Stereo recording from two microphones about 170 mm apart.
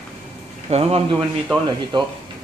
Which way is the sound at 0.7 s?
35° right (ahead or behind).